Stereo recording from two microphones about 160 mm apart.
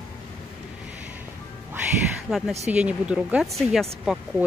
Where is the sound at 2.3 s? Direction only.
Centre (ahead or behind).